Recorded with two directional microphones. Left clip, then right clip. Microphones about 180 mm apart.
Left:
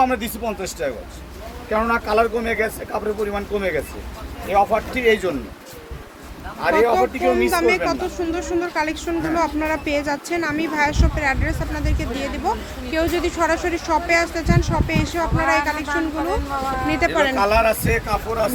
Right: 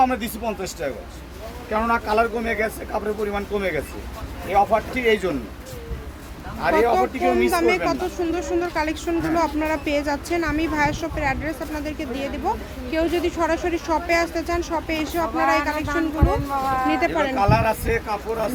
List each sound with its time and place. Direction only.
0.0 s speech: 10° left (ahead or behind)
1.7 s speech: 20° left (ahead or behind); by 5.3 s 5° left (ahead or behind)
6.6 s speech: 15° left (ahead or behind)
7.3 s speech: 5° left (ahead or behind)
16.9 s speech: 5° left (ahead or behind); by 18.5 s 20° left (ahead or behind)